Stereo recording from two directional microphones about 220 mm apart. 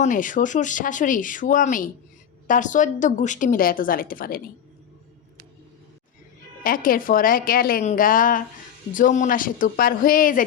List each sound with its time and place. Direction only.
0.0 s speech: 35° left (ahead or behind)
6.6 s speech: 40° left (ahead or behind)